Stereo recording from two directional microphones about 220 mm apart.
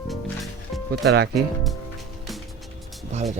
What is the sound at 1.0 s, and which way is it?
Speech, 45° right (ahead or behind).